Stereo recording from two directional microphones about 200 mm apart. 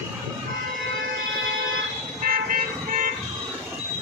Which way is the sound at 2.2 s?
45° right (ahead or behind).